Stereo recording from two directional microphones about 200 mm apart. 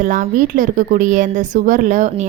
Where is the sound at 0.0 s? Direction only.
40° right (ahead or behind).